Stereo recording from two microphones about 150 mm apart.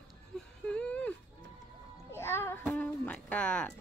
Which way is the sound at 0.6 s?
5° left (ahead or behind).